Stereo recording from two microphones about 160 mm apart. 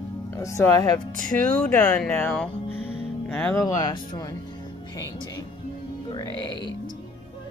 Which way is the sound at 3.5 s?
20° left (ahead or behind).